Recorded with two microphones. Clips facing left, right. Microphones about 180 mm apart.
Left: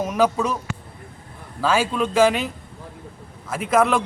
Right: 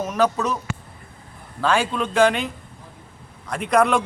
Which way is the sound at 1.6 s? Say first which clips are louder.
Left 1 dB; 5° left (ahead or behind).